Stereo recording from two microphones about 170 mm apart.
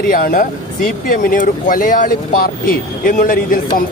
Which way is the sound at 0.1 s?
55° left (ahead or behind).